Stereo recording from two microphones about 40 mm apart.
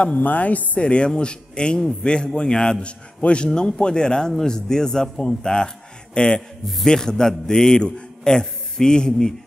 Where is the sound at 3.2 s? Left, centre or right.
Left.